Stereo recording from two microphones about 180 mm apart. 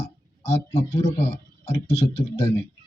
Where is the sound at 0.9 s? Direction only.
15° left (ahead or behind).